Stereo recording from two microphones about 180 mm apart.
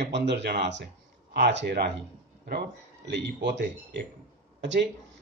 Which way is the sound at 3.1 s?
70° right (ahead or behind).